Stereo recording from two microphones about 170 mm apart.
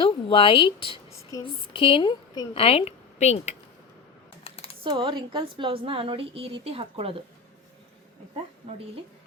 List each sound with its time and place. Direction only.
0.0 s a woman's voice: 30° left (ahead or behind)
4.4 s computer keyboard: 35° left (ahead or behind)
4.8 s a woman's voice: 30° right (ahead or behind)